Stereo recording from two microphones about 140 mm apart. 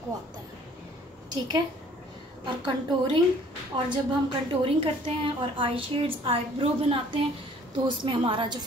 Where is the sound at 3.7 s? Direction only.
35° right (ahead or behind).